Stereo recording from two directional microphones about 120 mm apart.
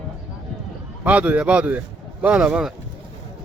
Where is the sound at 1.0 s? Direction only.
10° right (ahead or behind).